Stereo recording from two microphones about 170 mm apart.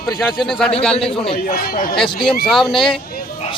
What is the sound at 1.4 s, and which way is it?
Speech, 60° left (ahead or behind).